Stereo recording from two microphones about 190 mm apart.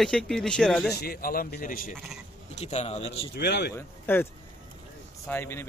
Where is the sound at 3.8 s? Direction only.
10° left (ahead or behind).